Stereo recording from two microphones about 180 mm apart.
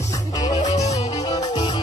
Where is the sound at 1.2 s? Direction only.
20° left (ahead or behind).